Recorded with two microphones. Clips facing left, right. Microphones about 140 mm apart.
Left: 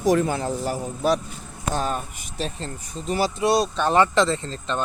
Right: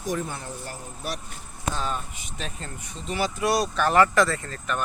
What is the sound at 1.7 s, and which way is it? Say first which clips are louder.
Speech: left 8 dB; 45° left (ahead or behind).